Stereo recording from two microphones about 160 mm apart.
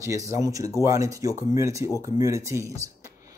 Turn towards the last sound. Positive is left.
turn(degrees=-20)  # may be behind; listen again after turning